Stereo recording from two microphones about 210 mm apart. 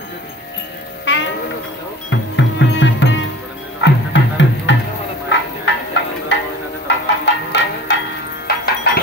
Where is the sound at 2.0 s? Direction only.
60° left (ahead or behind).